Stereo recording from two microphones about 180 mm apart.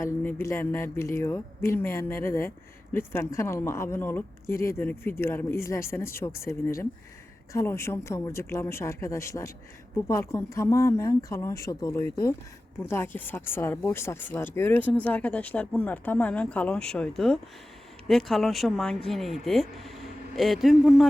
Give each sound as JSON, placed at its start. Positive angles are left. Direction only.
{"t": 0.0, "sound": "speech", "side_deg": 10}